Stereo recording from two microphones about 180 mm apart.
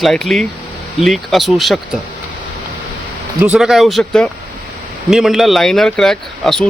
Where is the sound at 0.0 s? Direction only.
Centre (ahead or behind).